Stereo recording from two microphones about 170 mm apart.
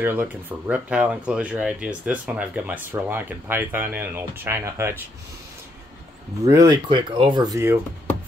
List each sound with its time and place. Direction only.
0.0 s speech: 10° right (ahead or behind)
6.4 s speech: 20° right (ahead or behind)
7.5 s speech: 15° right (ahead or behind)